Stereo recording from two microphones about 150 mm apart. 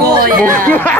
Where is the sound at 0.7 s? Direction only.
10° left (ahead or behind).